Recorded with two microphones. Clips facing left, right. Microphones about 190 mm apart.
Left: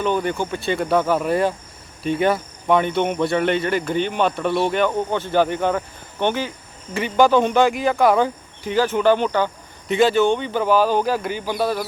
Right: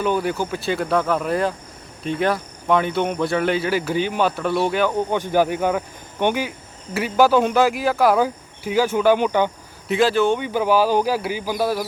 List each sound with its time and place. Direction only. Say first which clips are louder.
0.0 s speech: even; 5° right (ahead or behind)
9.9 s speech: left 1 dB; centre (ahead or behind)